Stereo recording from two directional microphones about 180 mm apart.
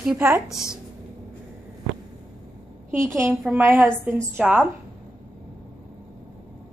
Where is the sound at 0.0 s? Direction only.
10° right (ahead or behind).